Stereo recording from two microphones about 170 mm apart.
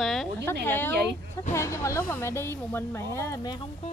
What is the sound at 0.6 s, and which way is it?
Speech, 10° left (ahead or behind).